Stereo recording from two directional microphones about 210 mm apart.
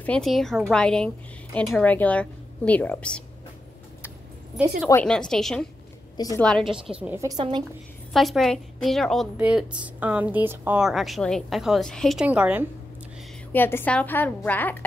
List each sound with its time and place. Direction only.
0.0 s a woman's voice: 5° left (ahead or behind)
4.6 s a woman's voice: 5° right (ahead or behind)
6.1 s a woman's voice: 15° left (ahead or behind)
6.4 s a woman's voice: centre (ahead or behind)
7.0 s a woman's voice: 10° right (ahead or behind)
8.1 s a woman's voice: centre (ahead or behind)
13.5 s a woman's voice: 10° left (ahead or behind)